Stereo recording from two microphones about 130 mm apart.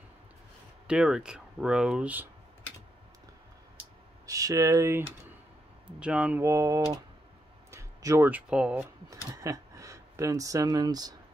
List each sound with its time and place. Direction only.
0.8 s speech: 5° right (ahead or behind)
4.3 s speech: 25° right (ahead or behind)
5.9 s speech: 10° right (ahead or behind)
6.4 s speech: 25° right (ahead or behind)
7.7 s a sound: 25° right (ahead or behind)
8.3 s speech: 10° right (ahead or behind)
9.1 s speech: 25° right (ahead or behind)